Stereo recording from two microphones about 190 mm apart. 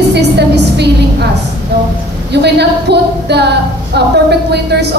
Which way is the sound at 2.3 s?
60° right (ahead or behind).